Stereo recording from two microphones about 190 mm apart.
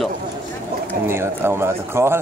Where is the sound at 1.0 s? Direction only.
15° right (ahead or behind).